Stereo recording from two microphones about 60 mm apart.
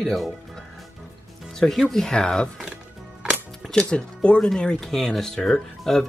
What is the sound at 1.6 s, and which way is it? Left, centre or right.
Speech, centre.